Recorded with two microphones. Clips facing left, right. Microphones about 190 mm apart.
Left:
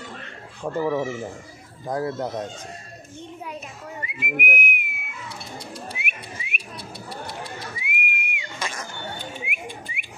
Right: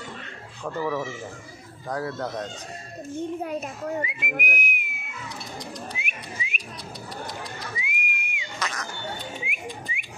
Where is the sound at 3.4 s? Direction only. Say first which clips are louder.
Right 6 dB; 50° right (ahead or behind).